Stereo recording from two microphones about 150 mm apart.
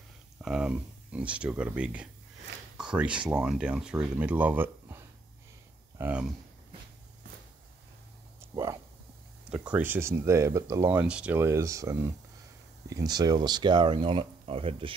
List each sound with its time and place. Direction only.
0.4 s speech: 5° right (ahead or behind)
8.4 s a sound: 20° right (ahead or behind)
9.5 s speech: 10° right (ahead or behind); by 15.0 s 35° right (ahead or behind)